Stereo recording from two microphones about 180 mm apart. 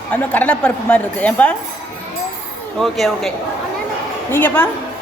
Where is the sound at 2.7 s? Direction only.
Centre (ahead or behind).